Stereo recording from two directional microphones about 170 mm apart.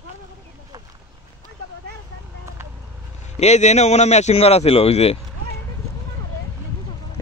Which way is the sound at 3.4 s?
40° left (ahead or behind).